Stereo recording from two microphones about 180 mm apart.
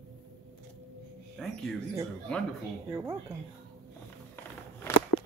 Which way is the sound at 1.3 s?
Centre (ahead or behind).